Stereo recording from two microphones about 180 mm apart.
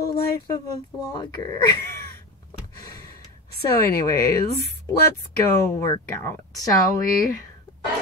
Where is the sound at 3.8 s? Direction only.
55° left (ahead or behind).